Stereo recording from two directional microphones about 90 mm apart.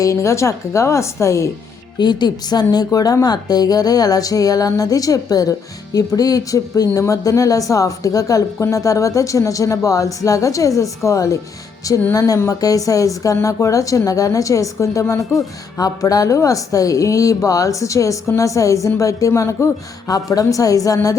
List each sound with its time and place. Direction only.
0.0 s speech: 35° left (ahead or behind)
2.0 s speech: 55° left (ahead or behind); by 15.2 s 35° left (ahead or behind)
15.2 s speech: centre (ahead or behind)
15.8 s speech: 45° left (ahead or behind)